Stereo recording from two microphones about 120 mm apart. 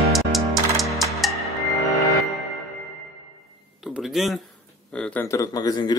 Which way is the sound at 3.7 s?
5° right (ahead or behind).